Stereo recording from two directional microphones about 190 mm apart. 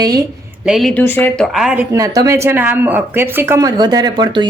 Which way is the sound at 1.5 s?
5° right (ahead or behind).